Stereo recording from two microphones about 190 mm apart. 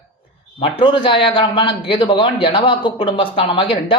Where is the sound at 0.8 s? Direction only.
25° left (ahead or behind).